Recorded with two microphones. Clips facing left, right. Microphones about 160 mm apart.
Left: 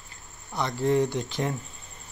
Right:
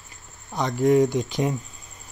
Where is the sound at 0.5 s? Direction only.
15° right (ahead or behind).